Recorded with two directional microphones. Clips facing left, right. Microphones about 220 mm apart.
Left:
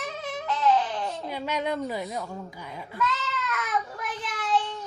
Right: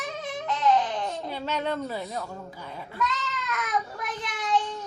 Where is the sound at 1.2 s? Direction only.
10° left (ahead or behind).